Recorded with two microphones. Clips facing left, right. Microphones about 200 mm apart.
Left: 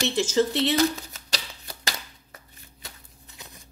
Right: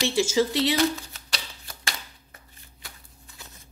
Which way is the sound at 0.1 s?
10° right (ahead or behind).